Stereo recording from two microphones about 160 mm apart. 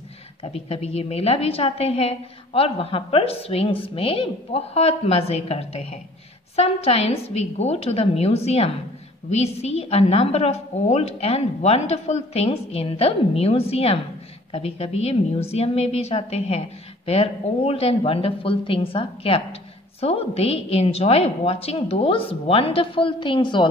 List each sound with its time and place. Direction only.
0.4 s a woman's voice: 40° left (ahead or behind)